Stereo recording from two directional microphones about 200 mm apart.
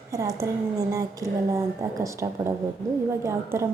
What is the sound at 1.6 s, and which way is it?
Speech, 15° right (ahead or behind).